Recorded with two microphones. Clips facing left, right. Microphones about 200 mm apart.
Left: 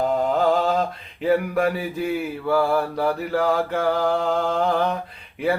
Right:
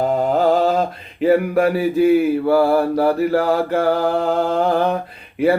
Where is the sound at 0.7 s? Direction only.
55° right (ahead or behind).